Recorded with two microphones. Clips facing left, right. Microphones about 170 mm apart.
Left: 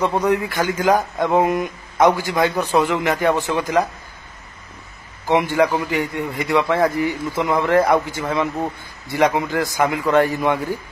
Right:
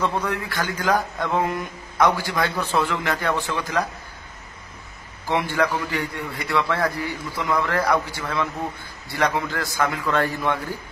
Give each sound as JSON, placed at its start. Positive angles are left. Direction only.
{"t": 0.0, "sound": "a man's voice", "side_deg": 20}
{"t": 5.3, "sound": "a man's voice", "side_deg": 15}